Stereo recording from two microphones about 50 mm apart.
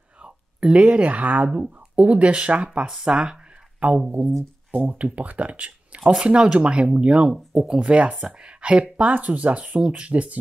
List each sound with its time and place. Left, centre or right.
0.7 s speech: right
4.7 s speech: right
7.5 s speech: centre
7.8 s speech: right